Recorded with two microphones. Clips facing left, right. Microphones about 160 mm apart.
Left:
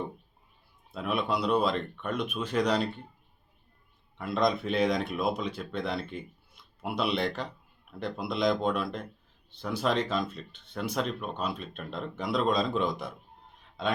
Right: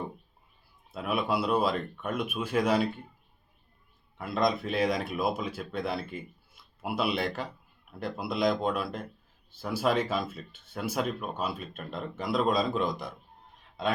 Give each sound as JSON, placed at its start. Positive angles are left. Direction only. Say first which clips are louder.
{"t": 0.9, "sound": "speech", "louder": "right 1 dB", "side_deg": -5}
{"t": 4.2, "sound": "speech", "louder": "left 1 dB", "side_deg": 0}